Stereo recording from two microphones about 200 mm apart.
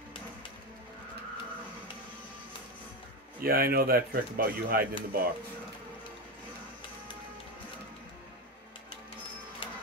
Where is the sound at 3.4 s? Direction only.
50° right (ahead or behind).